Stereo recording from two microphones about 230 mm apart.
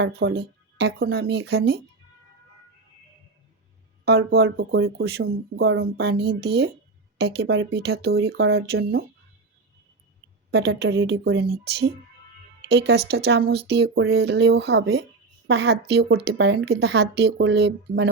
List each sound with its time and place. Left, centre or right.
0.0 s speech: right
4.0 s speech: right
10.5 s speech: right